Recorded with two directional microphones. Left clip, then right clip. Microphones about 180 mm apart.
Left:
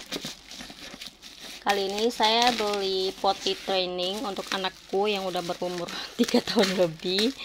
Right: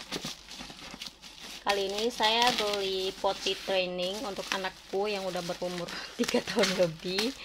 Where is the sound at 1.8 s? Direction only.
40° left (ahead or behind).